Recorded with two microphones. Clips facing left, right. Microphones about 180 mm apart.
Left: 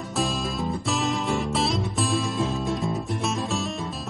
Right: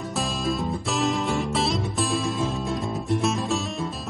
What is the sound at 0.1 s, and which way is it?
Music, centre (ahead or behind).